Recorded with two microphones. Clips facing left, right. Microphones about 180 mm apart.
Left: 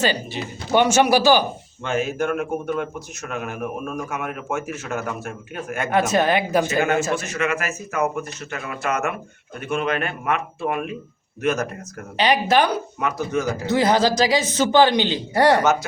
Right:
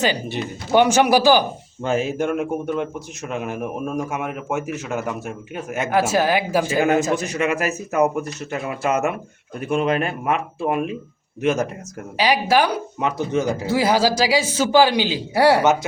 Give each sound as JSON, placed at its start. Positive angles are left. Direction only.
{"t": 0.7, "sound": "a man's voice", "side_deg": -15}
{"t": 1.8, "sound": "speech", "side_deg": -35}
{"t": 5.9, "sound": "a man's voice", "side_deg": -5}
{"t": 7.3, "sound": "speech", "side_deg": -35}
{"t": 11.4, "sound": "speech", "side_deg": -25}
{"t": 12.1, "sound": "a man's voice", "side_deg": -10}
{"t": 13.0, "sound": "speech", "side_deg": -25}
{"t": 13.7, "sound": "a man's voice", "side_deg": -10}